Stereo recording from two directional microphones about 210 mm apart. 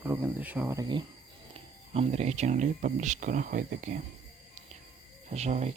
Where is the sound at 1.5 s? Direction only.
30° right (ahead or behind).